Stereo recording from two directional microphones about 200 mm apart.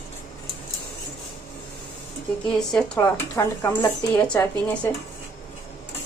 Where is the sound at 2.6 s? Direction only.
5° left (ahead or behind).